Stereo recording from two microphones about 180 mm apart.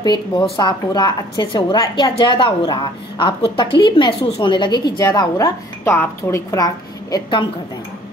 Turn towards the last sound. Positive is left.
turn(degrees=25)  # may be behind; listen again after turning